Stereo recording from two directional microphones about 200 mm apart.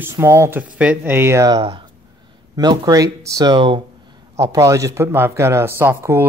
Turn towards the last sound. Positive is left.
turn(degrees=-10)  # may be behind; listen again after turning